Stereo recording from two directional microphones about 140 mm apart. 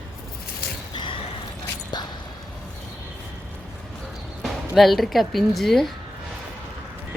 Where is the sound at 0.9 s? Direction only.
35° left (ahead or behind).